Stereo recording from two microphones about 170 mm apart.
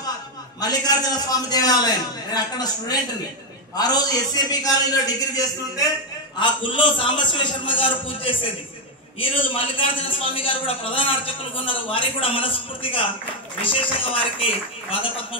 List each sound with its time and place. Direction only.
0.6 s a man's voice: 20° left (ahead or behind)